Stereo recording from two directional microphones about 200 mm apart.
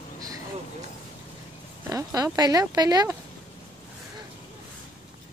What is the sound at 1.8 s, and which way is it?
Speech, 15° right (ahead or behind).